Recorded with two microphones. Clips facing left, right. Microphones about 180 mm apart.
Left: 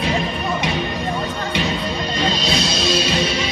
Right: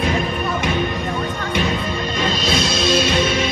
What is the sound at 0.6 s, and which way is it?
Music, 50° right (ahead or behind).